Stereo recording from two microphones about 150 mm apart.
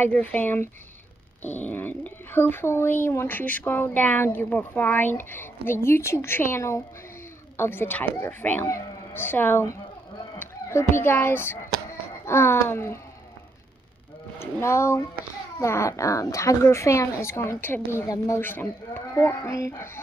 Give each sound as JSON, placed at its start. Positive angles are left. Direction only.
{"t": 0.0, "sound": "a child's voice", "side_deg": 10}
{"t": 14.4, "sound": "speech", "side_deg": 20}
{"t": 18.0, "sound": "speech", "side_deg": 25}